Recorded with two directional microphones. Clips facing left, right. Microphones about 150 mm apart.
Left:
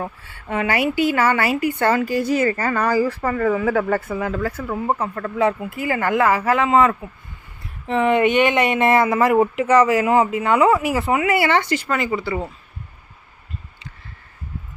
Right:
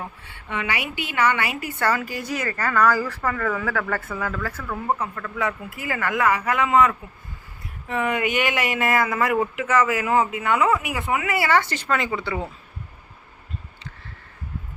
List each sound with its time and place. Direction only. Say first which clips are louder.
0.3 s speech: left 6 dB; 45° left (ahead or behind)
1.6 s speech: left 4 dB; 25° left (ahead or behind)
4.6 s speech: even; 30° left (ahead or behind)
11.7 s speech: left 3 dB; 5° left (ahead or behind)